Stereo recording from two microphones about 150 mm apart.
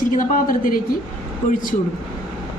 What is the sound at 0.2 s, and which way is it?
Speech, 65° left (ahead or behind).